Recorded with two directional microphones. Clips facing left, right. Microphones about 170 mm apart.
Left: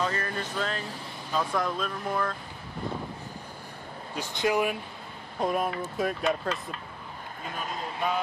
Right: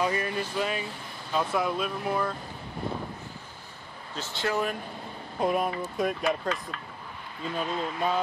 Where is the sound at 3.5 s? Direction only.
15° left (ahead or behind).